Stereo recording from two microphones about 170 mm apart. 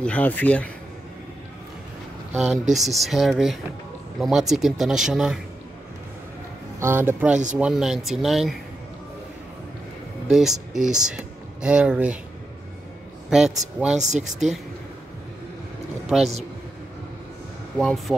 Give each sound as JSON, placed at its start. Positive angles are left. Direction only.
{"t": 0.0, "sound": "speech", "side_deg": 10}
{"t": 2.3, "sound": "speech", "side_deg": -5}
{"t": 6.8, "sound": "speech", "side_deg": -15}
{"t": 10.3, "sound": "speech", "side_deg": 0}
{"t": 13.3, "sound": "speech", "side_deg": -5}
{"t": 13.9, "sound": "speech", "side_deg": -45}
{"t": 16.1, "sound": "speech", "side_deg": 0}
{"t": 17.7, "sound": "speech", "side_deg": 0}